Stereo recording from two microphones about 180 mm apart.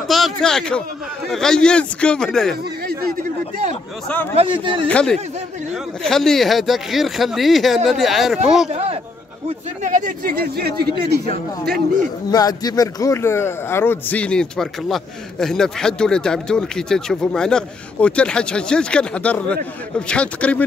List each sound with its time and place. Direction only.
0.1 s speech: centre (ahead or behind)
4.4 s a man's voice: 30° right (ahead or behind)
4.8 s speech: 5° left (ahead or behind)
9.8 s speech: 45° right (ahead or behind)
12.3 s a man's voice: 20° left (ahead or behind)